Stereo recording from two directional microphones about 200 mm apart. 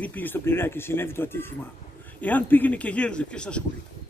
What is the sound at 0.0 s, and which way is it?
Speech, 10° left (ahead or behind).